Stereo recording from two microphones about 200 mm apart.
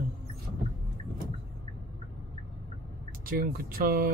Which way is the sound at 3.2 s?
45° right (ahead or behind).